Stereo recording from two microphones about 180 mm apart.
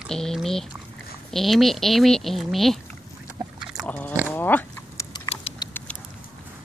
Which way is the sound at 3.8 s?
10° left (ahead or behind).